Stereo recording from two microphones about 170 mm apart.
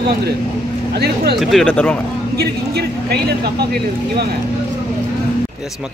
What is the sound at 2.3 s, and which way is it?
A man's voice, 70° right (ahead or behind).